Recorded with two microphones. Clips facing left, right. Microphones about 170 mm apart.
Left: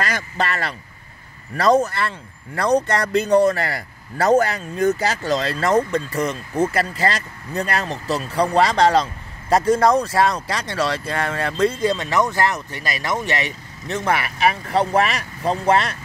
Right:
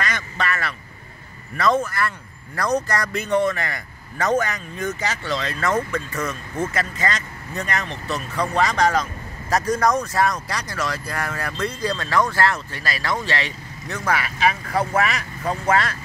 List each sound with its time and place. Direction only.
0.0 s speech: 35° left (ahead or behind)